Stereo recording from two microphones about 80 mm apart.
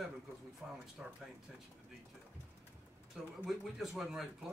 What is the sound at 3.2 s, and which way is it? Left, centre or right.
Speech, centre.